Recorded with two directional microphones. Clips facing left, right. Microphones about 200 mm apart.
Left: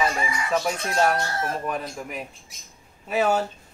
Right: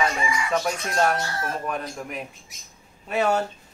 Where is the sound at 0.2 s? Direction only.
45° left (ahead or behind).